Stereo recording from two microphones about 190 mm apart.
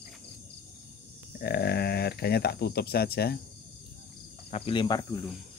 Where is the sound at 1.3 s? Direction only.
55° left (ahead or behind).